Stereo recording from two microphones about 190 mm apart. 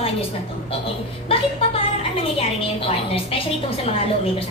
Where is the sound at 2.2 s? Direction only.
30° left (ahead or behind).